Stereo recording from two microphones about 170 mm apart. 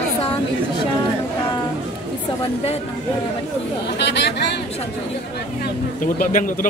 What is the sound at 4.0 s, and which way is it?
Speech, 85° left.